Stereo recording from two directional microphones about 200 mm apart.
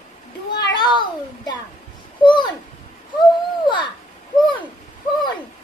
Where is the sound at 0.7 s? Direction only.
20° left (ahead or behind).